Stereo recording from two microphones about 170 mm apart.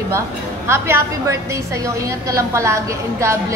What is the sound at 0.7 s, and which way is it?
Speech, 15° right (ahead or behind).